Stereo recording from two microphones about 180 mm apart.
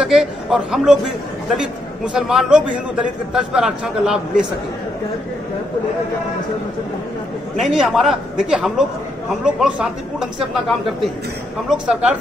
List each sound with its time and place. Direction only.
0.0 s a man's voice: 5° right (ahead or behind)
7.5 s a man's voice: centre (ahead or behind)
11.7 s a man's voice: 5° right (ahead or behind)